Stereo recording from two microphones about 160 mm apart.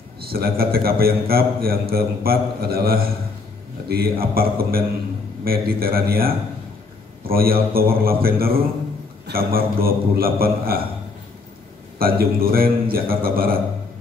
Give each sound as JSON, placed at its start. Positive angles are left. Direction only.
{"t": 0.3, "sound": "a man's voice", "side_deg": -70}
{"t": 12.0, "sound": "a man's voice", "side_deg": -65}